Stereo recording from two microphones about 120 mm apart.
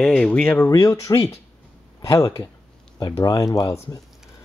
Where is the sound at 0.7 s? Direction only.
25° left (ahead or behind).